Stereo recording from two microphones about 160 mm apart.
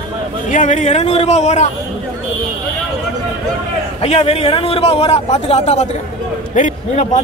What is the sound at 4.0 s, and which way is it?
A man's voice, 40° left (ahead or behind).